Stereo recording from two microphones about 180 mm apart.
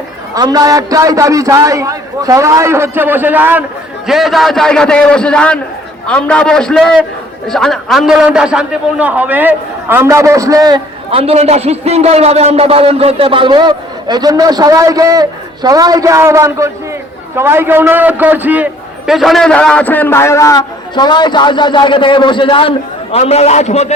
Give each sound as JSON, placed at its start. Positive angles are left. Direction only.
{"t": 0.3, "sound": "a man's voice", "side_deg": -20}
{"t": 11.1, "sound": "a man's voice", "side_deg": -35}